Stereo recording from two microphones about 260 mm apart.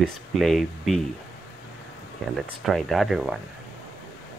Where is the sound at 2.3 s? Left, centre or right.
Centre.